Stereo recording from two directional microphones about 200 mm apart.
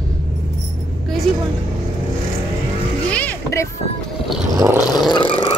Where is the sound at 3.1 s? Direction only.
10° left (ahead or behind).